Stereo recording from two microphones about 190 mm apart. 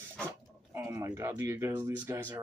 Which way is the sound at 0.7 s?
15° right (ahead or behind).